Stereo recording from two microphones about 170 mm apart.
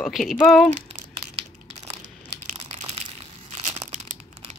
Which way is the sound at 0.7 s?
40° right (ahead or behind).